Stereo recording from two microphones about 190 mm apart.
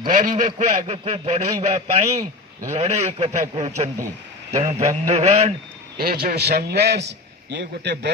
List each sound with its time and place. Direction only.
0.0 s a man's voice: 45° right (ahead or behind)
5.9 s a man's voice: 55° right (ahead or behind)